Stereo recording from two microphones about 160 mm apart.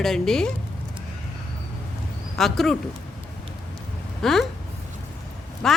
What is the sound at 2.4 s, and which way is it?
Speech, centre (ahead or behind).